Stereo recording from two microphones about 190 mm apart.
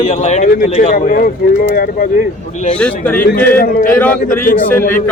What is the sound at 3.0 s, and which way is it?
Speech, 10° left (ahead or behind).